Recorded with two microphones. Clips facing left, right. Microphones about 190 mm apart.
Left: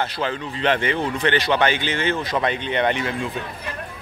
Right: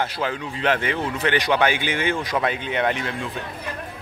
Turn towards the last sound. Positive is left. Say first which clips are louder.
# left 2 dB
turn(degrees=0)  # may be behind; listen again after turning